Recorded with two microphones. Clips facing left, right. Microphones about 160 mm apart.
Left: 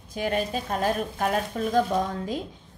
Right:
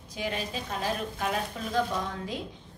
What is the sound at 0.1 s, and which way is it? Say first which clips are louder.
A woman's voice: left 6 dB; 50° left (ahead or behind).